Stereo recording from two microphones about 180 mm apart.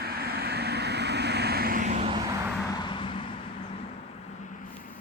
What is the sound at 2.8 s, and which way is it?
Vehicle, 25° left (ahead or behind).